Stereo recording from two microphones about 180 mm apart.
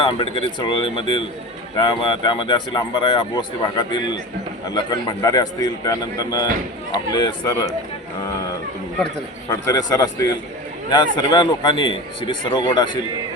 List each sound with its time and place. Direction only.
0.2 s speech: 25° left (ahead or behind)
9.5 s speech: 20° left (ahead or behind)